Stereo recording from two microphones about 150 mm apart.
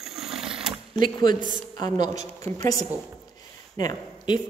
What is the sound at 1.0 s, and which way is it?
A woman's voice, 30° left (ahead or behind).